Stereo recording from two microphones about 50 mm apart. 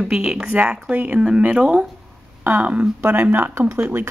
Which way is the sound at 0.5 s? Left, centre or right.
Right.